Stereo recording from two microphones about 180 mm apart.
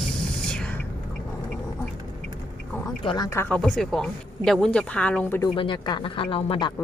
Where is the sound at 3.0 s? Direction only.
20° left (ahead or behind).